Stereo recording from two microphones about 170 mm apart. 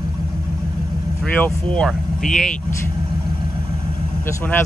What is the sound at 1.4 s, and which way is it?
Speech, 5° left (ahead or behind).